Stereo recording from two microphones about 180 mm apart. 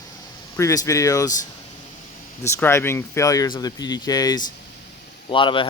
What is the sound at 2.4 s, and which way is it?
Speech, 15° left (ahead or behind).